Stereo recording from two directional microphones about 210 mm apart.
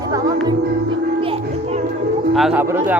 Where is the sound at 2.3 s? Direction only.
Centre (ahead or behind).